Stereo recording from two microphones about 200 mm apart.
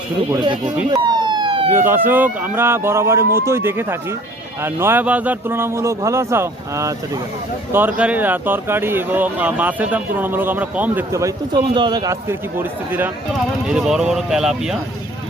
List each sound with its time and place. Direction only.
0.9 s police car: 20° right (ahead or behind)
1.7 s speech: 10° right (ahead or behind)